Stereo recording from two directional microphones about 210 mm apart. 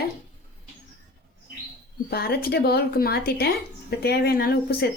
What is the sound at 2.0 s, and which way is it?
Speech, 50° left (ahead or behind).